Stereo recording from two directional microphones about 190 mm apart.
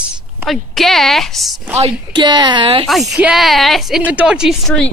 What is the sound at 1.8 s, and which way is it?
A woman's voice, 25° right (ahead or behind).